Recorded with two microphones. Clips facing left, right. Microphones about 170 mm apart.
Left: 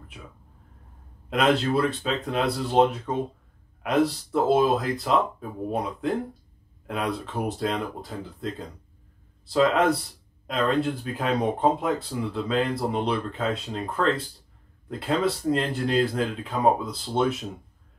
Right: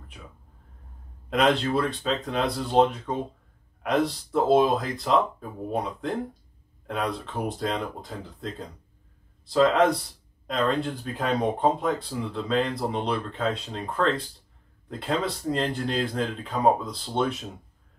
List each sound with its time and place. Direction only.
1.3 s speech: centre (ahead or behind)